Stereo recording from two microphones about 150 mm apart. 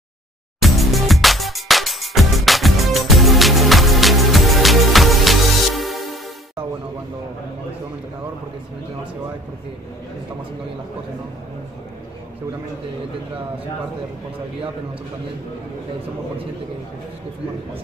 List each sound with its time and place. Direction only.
0.6 s music: centre (ahead or behind)